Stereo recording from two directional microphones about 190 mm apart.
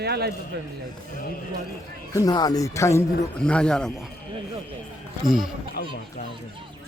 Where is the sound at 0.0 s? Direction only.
60° right (ahead or behind).